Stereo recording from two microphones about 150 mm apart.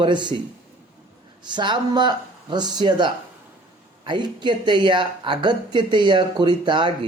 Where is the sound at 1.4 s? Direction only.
30° right (ahead or behind).